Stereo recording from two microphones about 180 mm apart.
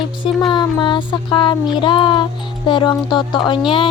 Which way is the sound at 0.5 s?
25° left (ahead or behind).